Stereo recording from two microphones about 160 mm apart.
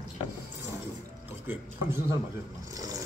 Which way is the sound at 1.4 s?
15° right (ahead or behind).